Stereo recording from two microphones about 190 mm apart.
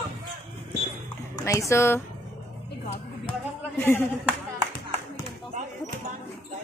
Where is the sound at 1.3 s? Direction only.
15° left (ahead or behind).